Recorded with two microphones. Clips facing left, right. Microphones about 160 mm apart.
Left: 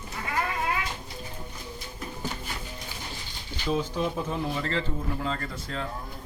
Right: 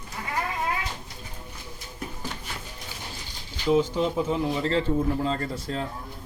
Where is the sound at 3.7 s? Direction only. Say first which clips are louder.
Right 5 dB; 20° right (ahead or behind).